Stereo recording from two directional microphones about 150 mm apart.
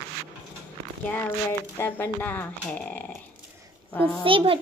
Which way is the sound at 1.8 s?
15° left (ahead or behind).